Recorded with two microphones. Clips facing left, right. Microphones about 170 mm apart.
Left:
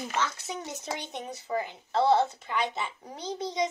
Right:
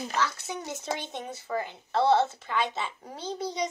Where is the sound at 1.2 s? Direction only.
20° left (ahead or behind).